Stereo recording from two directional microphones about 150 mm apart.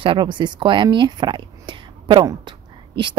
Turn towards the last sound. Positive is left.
turn(degrees=-30)  # may be behind; listen again after turning